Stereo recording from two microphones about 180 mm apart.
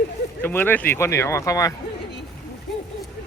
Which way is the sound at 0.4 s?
10° left (ahead or behind).